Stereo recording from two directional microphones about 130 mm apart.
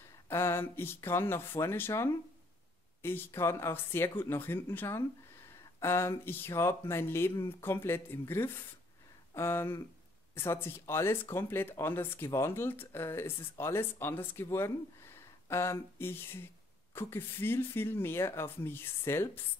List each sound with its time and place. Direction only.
0.3 s speech: 20° left (ahead or behind)
9.3 s a sound: 20° left (ahead or behind)
10.3 s speech: 20° left (ahead or behind)